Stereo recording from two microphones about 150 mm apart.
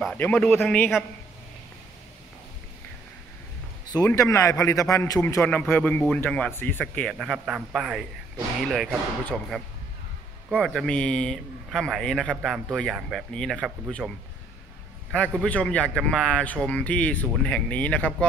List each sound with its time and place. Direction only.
0.0 s speech: 10° left (ahead or behind)
3.9 s speech: 20° left (ahead or behind); by 14.1 s 5° left (ahead or behind)
15.1 s speech: 5° left (ahead or behind)